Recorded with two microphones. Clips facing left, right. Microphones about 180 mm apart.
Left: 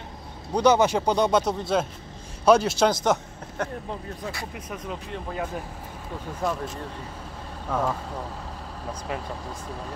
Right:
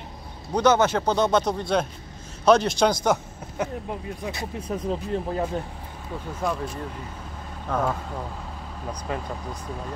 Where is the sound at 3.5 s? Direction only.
10° right (ahead or behind); by 5.5 s 35° right (ahead or behind).